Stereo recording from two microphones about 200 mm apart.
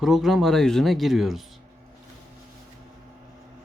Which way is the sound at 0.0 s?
Centre (ahead or behind).